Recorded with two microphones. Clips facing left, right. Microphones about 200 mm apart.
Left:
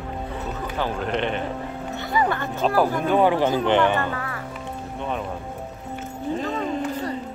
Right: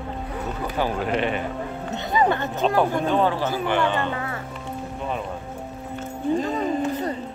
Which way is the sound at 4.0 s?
20° right (ahead or behind).